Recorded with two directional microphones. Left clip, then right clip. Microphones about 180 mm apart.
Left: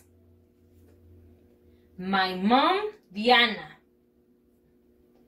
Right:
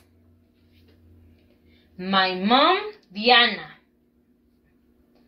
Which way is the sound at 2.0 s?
25° right (ahead or behind).